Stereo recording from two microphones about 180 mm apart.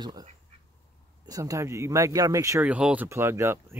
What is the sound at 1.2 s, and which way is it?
Speech, 20° right (ahead or behind).